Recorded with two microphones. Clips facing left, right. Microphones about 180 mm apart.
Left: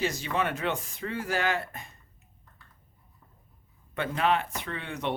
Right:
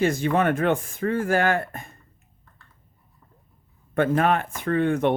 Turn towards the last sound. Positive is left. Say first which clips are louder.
# right 12 dB
turn(degrees=-50)  # may be behind; listen again after turning